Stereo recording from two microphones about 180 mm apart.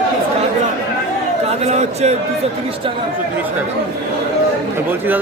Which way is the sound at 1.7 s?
35° right (ahead or behind).